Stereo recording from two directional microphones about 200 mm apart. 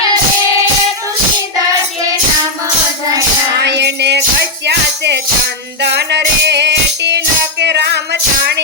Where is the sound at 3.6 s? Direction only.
60° right (ahead or behind).